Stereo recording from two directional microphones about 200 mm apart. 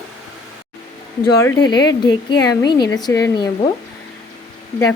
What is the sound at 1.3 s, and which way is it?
Speech, 15° left (ahead or behind).